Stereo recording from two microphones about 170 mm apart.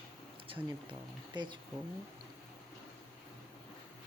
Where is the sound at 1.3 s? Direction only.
25° right (ahead or behind).